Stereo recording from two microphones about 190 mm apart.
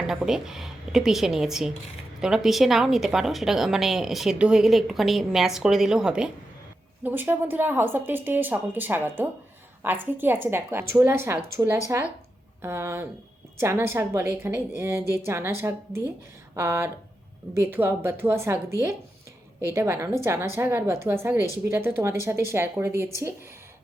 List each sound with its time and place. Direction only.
0.1 s a woman's voice: 5° right (ahead or behind)
15.0 s a woman's voice: 15° left (ahead or behind)
15.3 s a woman's voice: 15° right (ahead or behind)